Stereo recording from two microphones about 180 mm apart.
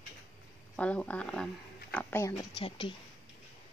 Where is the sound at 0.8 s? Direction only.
5° left (ahead or behind).